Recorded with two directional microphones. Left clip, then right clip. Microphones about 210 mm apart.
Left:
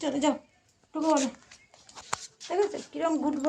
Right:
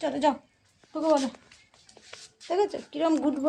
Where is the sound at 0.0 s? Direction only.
20° right (ahead or behind).